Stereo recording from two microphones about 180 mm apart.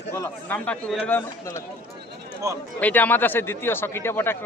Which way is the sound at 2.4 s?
20° right (ahead or behind).